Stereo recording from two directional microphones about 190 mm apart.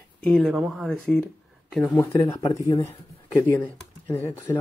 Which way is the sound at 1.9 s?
15° left (ahead or behind).